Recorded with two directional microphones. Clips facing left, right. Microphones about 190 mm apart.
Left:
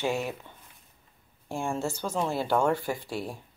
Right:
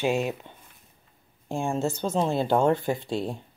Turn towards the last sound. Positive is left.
turn(degrees=-25)  # may be behind; listen again after turning